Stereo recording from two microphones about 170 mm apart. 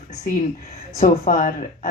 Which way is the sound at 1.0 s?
50° left (ahead or behind).